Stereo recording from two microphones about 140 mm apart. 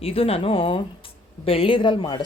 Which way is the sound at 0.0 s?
45° left (ahead or behind).